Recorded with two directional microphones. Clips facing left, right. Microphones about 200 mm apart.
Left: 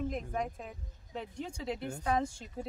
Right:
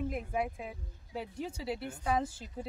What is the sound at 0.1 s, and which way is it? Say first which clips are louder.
Speech: right 1 dB; 5° right (ahead or behind).